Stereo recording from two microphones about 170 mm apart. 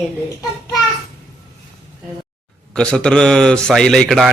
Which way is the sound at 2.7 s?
5° left (ahead or behind).